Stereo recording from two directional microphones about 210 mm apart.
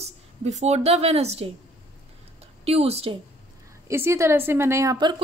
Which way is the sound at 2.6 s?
30° right (ahead or behind).